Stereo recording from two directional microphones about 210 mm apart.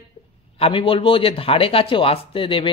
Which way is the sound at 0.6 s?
25° left (ahead or behind).